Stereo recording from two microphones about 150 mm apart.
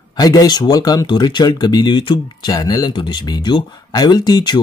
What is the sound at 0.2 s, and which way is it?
Speech, 25° left (ahead or behind).